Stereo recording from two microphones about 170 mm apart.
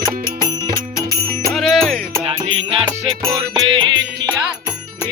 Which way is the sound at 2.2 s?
35° right (ahead or behind).